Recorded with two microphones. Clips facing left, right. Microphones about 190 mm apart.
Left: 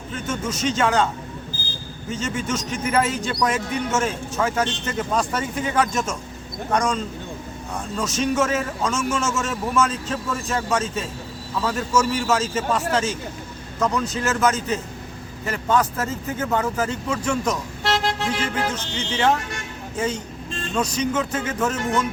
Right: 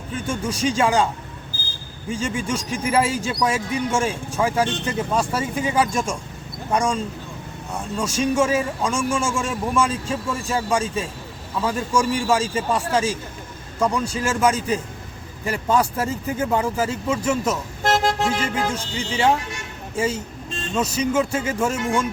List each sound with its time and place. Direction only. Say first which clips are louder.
0.3 s speech: right 1 dB; 10° right (ahead or behind)
17.8 s vehicle: right 3 dB; 50° right (ahead or behind)
18.3 s speech: right 1 dB; 10° right (ahead or behind)